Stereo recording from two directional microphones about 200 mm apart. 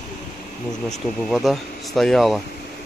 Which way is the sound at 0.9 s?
Centre (ahead or behind).